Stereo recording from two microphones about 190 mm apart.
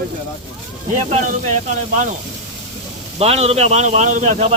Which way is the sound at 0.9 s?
40° right (ahead or behind).